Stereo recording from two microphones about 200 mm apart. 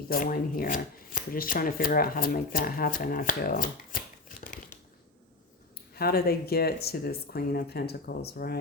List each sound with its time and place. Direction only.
0.1 s speech: 45° left (ahead or behind)
5.9 s speech: 50° left (ahead or behind)